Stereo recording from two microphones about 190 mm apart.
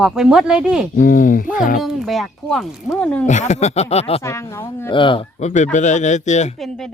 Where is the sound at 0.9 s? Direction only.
45° left (ahead or behind).